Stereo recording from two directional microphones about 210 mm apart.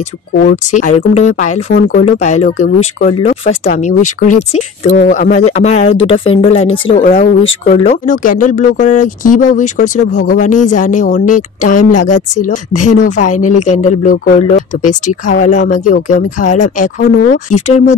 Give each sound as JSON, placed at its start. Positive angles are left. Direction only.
{"t": 0.5, "sound": "speech", "side_deg": 35}
{"t": 7.0, "sound": "speech", "side_deg": 40}